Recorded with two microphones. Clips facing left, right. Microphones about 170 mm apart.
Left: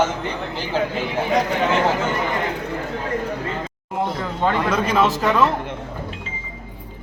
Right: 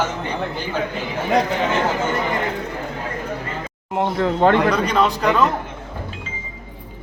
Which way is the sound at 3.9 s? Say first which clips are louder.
Right 5 dB; 65° right (ahead or behind).